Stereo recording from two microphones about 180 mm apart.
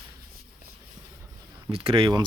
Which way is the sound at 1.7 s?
30° right (ahead or behind).